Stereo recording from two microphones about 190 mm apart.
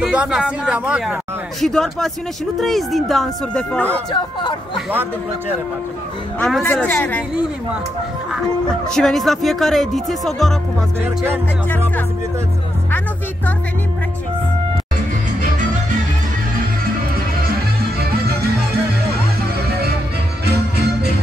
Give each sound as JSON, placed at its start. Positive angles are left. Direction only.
{"t": 0.0, "sound": "speech", "side_deg": -5}
{"t": 4.1, "sound": "speech", "side_deg": 25}
{"t": 6.4, "sound": "speech", "side_deg": 5}
{"t": 8.8, "sound": "speech", "side_deg": 5}
{"t": 11.0, "sound": "speech", "side_deg": -10}
{"t": 20.4, "sound": "music", "side_deg": -60}